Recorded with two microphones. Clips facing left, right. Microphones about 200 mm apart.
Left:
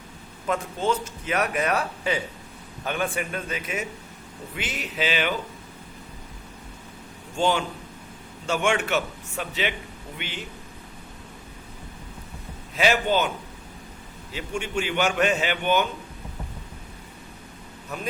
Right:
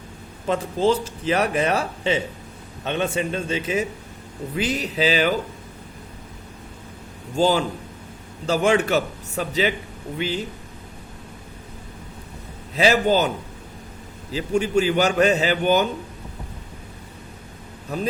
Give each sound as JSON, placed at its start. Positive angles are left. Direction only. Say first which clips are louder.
{"t": 0.4, "sound": "a man's voice", "louder": "right 5 dB", "side_deg": -30}
{"t": 7.3, "sound": "a man's voice", "louder": "right 4 dB", "side_deg": -35}
{"t": 12.7, "sound": "a man's voice", "louder": "right 4 dB", "side_deg": -35}
{"t": 14.3, "sound": "a man's voice", "louder": "right 8 dB", "side_deg": -35}
{"t": 17.9, "sound": "a man's voice", "louder": "right 8 dB", "side_deg": -35}